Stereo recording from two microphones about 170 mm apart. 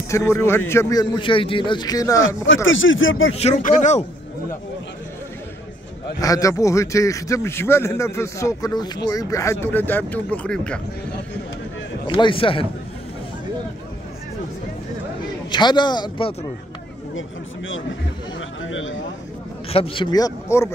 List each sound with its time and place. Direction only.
0.1 s a man's voice: 15° left (ahead or behind)
2.8 s speech: 90° left
3.3 s speech: 45° left (ahead or behind)
6.2 s a man's voice: 20° left (ahead or behind)
12.1 s a man's voice: 30° left (ahead or behind)
15.5 s a man's voice: 25° left (ahead or behind)
19.7 s a man's voice: 30° left (ahead or behind); by 20.7 s 15° left (ahead or behind)